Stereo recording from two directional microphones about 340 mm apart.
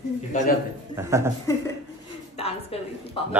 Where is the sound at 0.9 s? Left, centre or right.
Centre.